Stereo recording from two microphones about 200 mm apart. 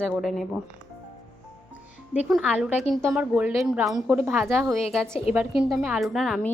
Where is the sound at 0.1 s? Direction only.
Centre (ahead or behind).